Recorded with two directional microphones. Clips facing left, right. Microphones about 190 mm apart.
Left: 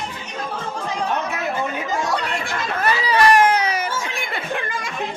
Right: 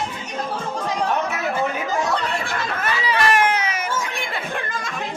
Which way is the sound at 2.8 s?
35° left (ahead or behind).